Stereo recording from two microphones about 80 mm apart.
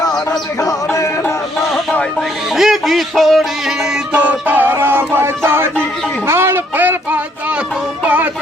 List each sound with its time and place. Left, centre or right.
0.3 s music: left
2.6 s speech: centre
4.1 s music: centre
6.2 s a sound: right
8.0 s music: right